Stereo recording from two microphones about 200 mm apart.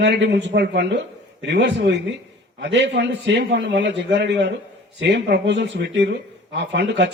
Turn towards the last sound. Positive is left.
turn(degrees=-60)  # may be behind; listen again after turning